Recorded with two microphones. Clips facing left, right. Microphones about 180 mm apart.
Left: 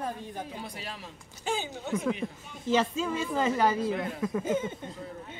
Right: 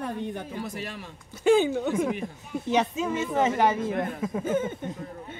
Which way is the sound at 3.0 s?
20° right (ahead or behind).